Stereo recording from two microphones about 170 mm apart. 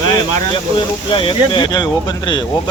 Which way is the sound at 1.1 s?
30° left (ahead or behind).